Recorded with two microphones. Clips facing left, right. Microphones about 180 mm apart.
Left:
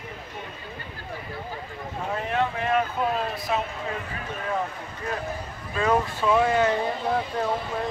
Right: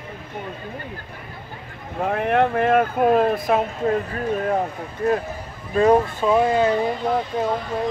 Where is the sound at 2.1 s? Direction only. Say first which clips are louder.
Right 7 dB; 60° right (ahead or behind).